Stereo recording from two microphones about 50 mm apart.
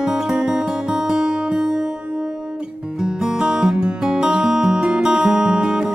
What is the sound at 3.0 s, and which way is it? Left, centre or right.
Music, centre.